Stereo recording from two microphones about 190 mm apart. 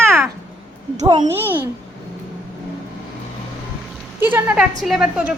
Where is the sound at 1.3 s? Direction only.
10° right (ahead or behind).